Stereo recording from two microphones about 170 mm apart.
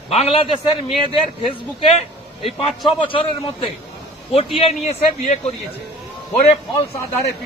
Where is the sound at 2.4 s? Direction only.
35° left (ahead or behind).